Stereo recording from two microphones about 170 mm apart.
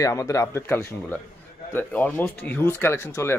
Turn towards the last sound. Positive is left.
turn(degrees=15)  # may be behind; listen again after turning